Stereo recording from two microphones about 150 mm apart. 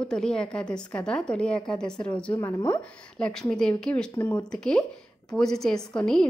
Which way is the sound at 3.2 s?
5° left (ahead or behind).